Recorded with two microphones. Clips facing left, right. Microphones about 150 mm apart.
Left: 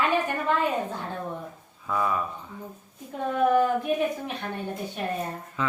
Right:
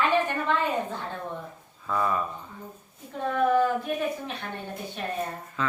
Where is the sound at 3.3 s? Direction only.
15° left (ahead or behind).